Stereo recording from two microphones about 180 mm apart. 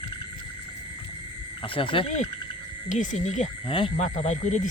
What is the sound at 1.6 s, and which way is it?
Speech, 30° left (ahead or behind).